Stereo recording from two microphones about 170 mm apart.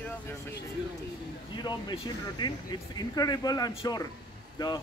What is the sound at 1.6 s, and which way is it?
Speech, 25° left (ahead or behind).